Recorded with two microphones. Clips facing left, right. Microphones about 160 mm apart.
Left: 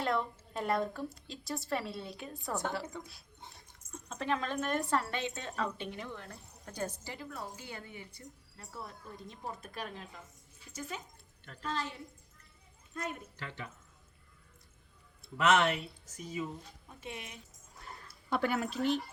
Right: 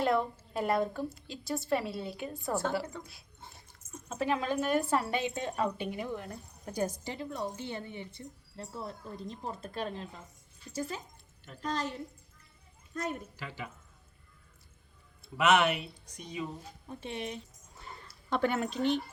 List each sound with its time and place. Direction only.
0.0 s a woman's voice: centre (ahead or behind)
7.1 s a woman's voice: 25° right (ahead or behind)
13.3 s a woman's voice: 5° right (ahead or behind)
15.2 s a woman's voice: centre (ahead or behind)
16.9 s speech: 30° right (ahead or behind)
17.7 s a sound: centre (ahead or behind)